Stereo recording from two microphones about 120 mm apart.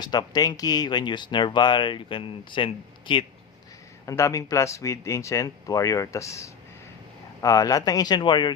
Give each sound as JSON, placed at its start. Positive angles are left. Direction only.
{"t": 0.0, "sound": "speech", "side_deg": 35}
{"t": 4.0, "sound": "speech", "side_deg": 25}